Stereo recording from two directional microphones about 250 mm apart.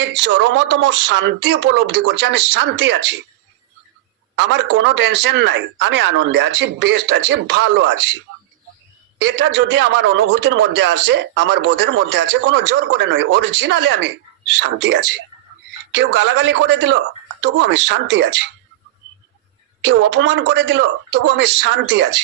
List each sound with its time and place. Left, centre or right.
0.0 s a man's voice: right
4.4 s a man's voice: right
9.1 s a man's voice: right
19.8 s a man's voice: right